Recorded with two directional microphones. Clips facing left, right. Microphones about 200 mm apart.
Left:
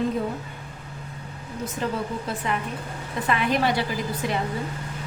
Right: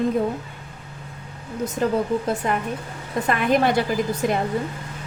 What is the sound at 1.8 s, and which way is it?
A woman's voice, 45° right (ahead or behind).